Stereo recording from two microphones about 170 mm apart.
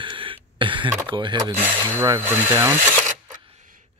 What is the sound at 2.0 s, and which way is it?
Speech, 15° right (ahead or behind).